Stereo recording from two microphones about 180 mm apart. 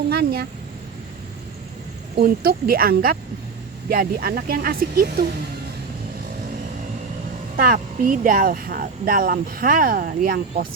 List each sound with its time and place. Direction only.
0.1 s speech: 60° right (ahead or behind)
2.1 s speech: 55° right (ahead or behind)
7.5 s speech: 50° right (ahead or behind)